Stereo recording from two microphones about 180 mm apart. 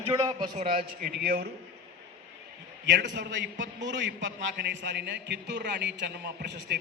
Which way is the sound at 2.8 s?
85° right.